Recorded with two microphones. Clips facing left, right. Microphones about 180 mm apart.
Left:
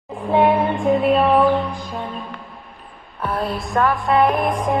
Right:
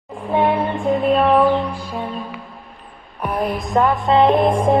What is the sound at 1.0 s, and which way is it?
Music, 5° left (ahead or behind).